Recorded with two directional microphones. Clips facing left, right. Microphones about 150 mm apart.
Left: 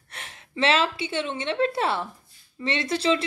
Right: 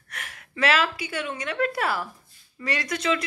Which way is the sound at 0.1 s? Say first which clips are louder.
Left 1 dB; 25° left (ahead or behind).